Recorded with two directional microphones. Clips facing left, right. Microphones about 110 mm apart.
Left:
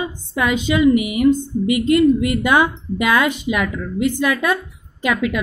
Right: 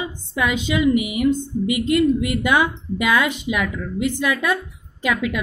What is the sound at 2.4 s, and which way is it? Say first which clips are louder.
A woman's voice: left 3 dB; 50° left (ahead or behind).